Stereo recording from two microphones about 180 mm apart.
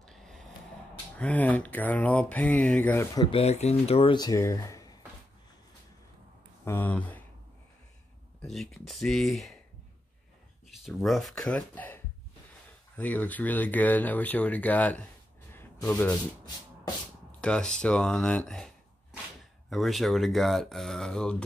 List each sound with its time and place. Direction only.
0.0 s a sound: centre (ahead or behind)
1.1 s speech: 10° left (ahead or behind)
3.2 s speech: 30° left (ahead or behind)
6.6 s speech: 10° left (ahead or behind)
8.4 s speech: centre (ahead or behind)
10.9 s speech: centre (ahead or behind)
15.5 s a sound: 10° left (ahead or behind)
17.4 s speech: 5° left (ahead or behind)
19.7 s speech: centre (ahead or behind)